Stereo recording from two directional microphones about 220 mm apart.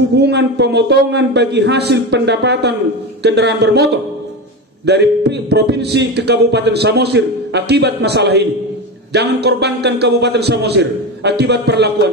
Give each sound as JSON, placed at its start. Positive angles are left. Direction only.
{"t": 0.1, "sound": "speech", "side_deg": -50}
{"t": 4.8, "sound": "speech", "side_deg": -50}